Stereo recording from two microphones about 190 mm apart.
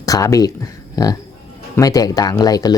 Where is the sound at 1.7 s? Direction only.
20° left (ahead or behind).